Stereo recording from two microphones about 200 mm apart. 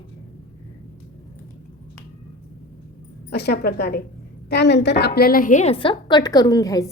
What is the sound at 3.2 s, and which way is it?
A woman's voice, 55° left (ahead or behind).